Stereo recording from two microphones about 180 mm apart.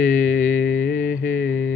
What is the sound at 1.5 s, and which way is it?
Music, 90° left.